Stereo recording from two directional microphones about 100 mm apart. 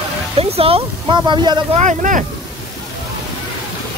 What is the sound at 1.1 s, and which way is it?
Speech, 50° right (ahead or behind).